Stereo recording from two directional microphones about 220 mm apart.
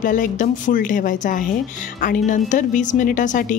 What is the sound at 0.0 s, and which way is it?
A woman's voice, 35° left (ahead or behind).